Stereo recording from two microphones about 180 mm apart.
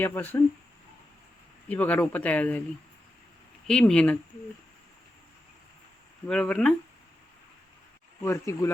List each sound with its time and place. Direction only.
0.0 s speech: 10° left (ahead or behind)
1.6 s speech: 10° left (ahead or behind)
3.7 s speech: 5° left (ahead or behind)
6.2 s speech: 5° left (ahead or behind)
8.2 s speech: 15° left (ahead or behind)